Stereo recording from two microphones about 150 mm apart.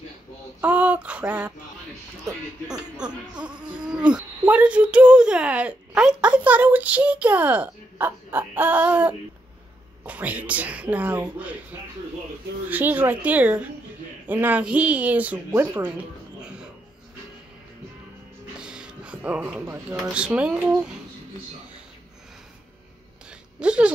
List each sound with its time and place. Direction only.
0.6 s speech: 10° right (ahead or behind)
3.5 s insect: 30° right (ahead or behind)
3.8 s speech: 5° right (ahead or behind)
12.6 s speech: 10° right (ahead or behind)
16.3 s music: 5° right (ahead or behind)
18.6 s music: 5° right (ahead or behind)
19.6 s speech: 20° right (ahead or behind)
20.0 s speech: 5° right (ahead or behind)
23.6 s speech: 5° right (ahead or behind)